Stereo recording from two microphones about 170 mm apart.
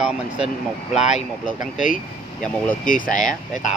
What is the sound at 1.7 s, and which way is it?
Speech, 50° left (ahead or behind).